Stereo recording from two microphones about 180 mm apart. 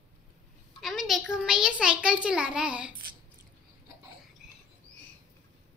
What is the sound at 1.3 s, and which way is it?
A child's voice, 5° right (ahead or behind).